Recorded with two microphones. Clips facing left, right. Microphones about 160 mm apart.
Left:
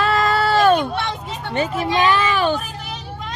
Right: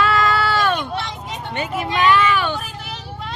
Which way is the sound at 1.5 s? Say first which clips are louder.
Left 3 dB; 35° left (ahead or behind).